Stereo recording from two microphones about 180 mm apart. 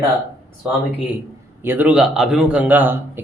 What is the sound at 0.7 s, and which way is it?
Speech, 10° right (ahead or behind).